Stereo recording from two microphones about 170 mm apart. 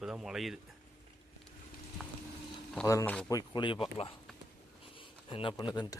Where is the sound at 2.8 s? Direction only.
15° left (ahead or behind).